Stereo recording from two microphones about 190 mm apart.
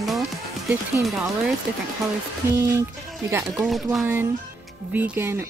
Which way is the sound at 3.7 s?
Centre (ahead or behind).